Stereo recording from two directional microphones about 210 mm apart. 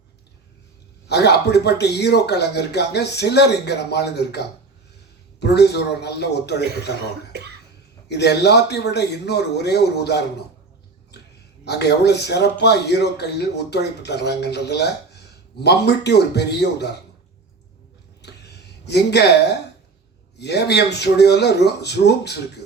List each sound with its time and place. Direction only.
1.0 s speech: 50° left (ahead or behind)
7.3 s cough: 50° right (ahead or behind)
8.0 s speech: 55° left (ahead or behind)
11.1 s a sound: 50° left (ahead or behind)
11.6 s speech: 50° left (ahead or behind)
18.2 s a sound: 50° left (ahead or behind)
20.4 s speech: 50° left (ahead or behind)